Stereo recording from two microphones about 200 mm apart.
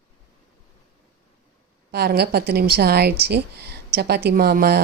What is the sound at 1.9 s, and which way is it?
Speech, 50° right (ahead or behind).